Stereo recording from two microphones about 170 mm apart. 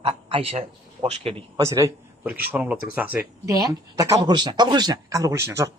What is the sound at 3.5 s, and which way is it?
Speech, 20° right (ahead or behind).